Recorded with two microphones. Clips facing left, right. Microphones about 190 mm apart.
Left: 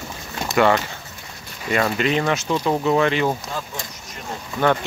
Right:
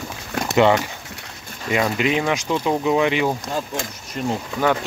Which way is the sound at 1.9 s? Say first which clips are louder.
Even; 10° right (ahead or behind).